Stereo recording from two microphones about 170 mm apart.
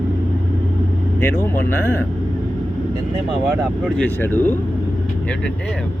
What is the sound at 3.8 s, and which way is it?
Speech, 10° left (ahead or behind).